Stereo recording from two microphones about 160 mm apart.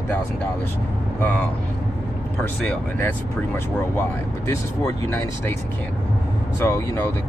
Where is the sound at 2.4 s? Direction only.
10° left (ahead or behind).